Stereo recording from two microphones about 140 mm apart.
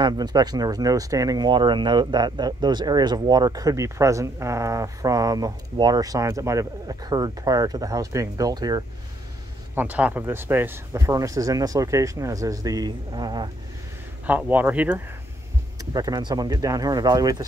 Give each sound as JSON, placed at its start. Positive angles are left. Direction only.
{"t": 0.0, "sound": "speech", "side_deg": -30}
{"t": 9.8, "sound": "speech", "side_deg": -10}
{"t": 14.2, "sound": "a man's voice", "side_deg": -10}
{"t": 15.8, "sound": "speech", "side_deg": -25}